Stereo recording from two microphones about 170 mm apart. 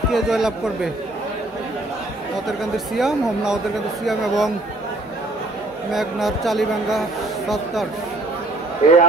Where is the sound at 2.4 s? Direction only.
Centre (ahead or behind).